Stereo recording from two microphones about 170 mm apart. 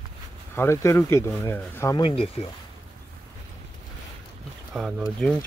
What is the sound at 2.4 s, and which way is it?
Speech, 35° left (ahead or behind).